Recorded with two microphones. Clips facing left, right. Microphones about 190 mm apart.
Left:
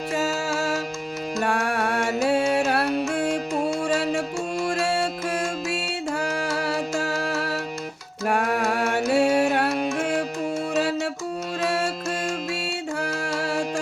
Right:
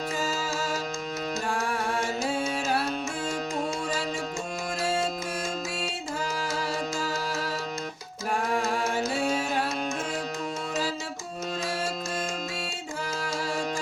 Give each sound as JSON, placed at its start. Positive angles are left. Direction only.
{"t": 0.1, "sound": "music", "side_deg": 70}